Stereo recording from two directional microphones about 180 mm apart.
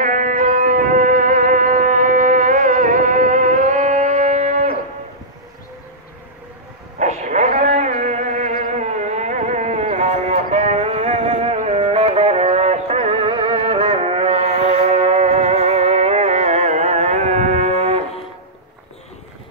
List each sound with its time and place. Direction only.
0.0 s music: 45° right (ahead or behind)
7.0 s a sound: 40° right (ahead or behind)
11.1 s music: 40° right (ahead or behind)